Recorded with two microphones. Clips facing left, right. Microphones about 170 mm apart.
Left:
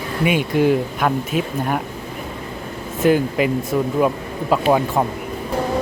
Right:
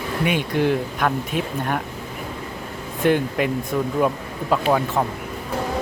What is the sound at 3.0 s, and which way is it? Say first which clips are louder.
Speech: left 3 dB; 5° left (ahead or behind).